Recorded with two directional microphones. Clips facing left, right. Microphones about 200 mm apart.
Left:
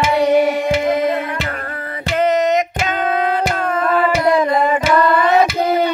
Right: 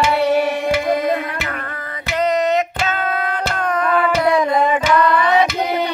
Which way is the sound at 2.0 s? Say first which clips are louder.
Left 2 dB; 25° left (ahead or behind).